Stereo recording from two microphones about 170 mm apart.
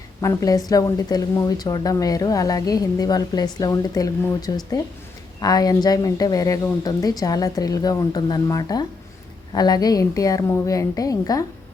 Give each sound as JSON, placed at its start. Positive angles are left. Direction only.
{"t": 0.2, "sound": "a woman's voice", "side_deg": 20}